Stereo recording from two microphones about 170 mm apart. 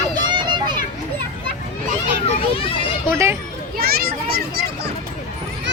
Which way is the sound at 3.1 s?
15° right (ahead or behind).